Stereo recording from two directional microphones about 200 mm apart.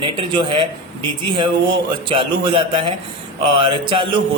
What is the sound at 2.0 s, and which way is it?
Mantra, 25° right (ahead or behind).